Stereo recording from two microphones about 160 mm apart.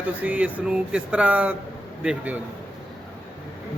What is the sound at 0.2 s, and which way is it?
Speech, 10° right (ahead or behind).